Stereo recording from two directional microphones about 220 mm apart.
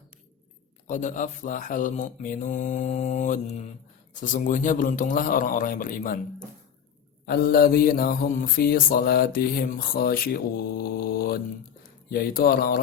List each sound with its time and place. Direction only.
0.9 s mantra: 35° left (ahead or behind)
7.3 s mantra: 40° left (ahead or behind)
11.8 s speech: 40° left (ahead or behind)